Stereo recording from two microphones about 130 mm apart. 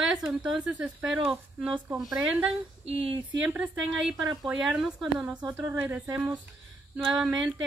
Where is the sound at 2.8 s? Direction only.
45° right (ahead or behind).